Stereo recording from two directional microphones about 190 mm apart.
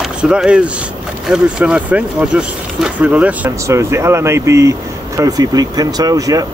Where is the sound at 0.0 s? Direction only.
5° right (ahead or behind).